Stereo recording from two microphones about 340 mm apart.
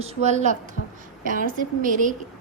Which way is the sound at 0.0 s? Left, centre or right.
Centre.